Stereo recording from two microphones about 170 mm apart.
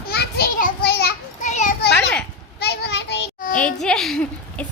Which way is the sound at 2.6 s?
75° left (ahead or behind).